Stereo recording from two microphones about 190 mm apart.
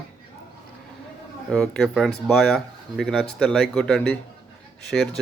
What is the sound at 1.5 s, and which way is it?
Speech, 5° left (ahead or behind).